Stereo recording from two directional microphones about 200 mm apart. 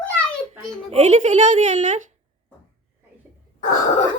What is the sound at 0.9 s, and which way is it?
A woman's voice, 35° right (ahead or behind).